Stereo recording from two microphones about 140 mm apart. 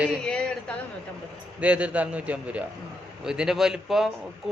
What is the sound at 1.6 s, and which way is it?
A man's voice, 10° right (ahead or behind).